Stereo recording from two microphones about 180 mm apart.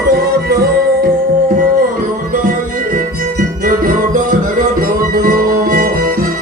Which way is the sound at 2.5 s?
50° right (ahead or behind).